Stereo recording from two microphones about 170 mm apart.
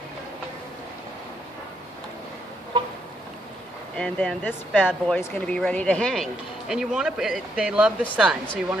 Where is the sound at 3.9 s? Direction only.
5° left (ahead or behind).